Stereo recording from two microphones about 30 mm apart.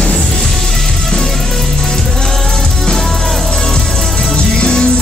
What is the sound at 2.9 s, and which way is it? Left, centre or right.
Music, centre.